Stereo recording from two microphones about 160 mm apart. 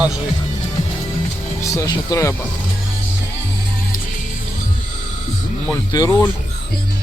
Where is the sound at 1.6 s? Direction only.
20° left (ahead or behind).